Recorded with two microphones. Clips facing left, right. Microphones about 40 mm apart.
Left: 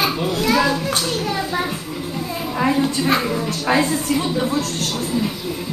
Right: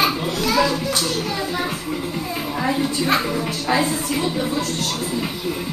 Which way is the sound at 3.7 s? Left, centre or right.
Left.